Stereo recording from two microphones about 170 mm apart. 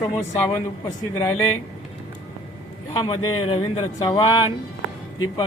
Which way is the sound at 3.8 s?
25° left (ahead or behind).